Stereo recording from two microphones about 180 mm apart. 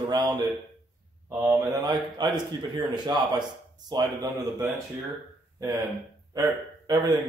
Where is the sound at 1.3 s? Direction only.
20° right (ahead or behind).